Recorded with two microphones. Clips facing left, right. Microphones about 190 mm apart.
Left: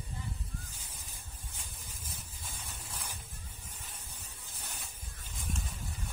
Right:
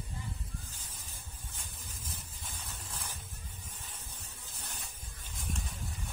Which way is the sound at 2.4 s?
10° left (ahead or behind).